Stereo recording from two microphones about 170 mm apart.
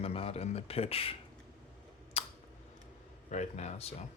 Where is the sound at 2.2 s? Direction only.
35° left (ahead or behind).